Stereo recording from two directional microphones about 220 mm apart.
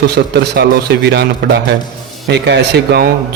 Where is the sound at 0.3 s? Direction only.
50° right (ahead or behind).